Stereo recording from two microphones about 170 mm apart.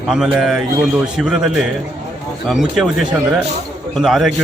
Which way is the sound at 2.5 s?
Centre (ahead or behind).